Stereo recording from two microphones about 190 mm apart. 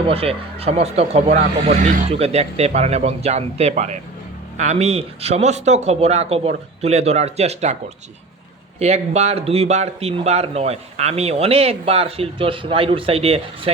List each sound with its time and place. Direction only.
0.1 s a man's voice: 30° right (ahead or behind)
8.8 s a man's voice: 35° right (ahead or behind)